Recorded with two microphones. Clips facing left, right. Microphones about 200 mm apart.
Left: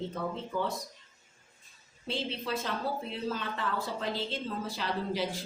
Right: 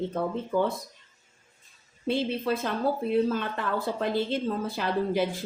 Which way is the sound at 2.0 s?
55° right (ahead or behind).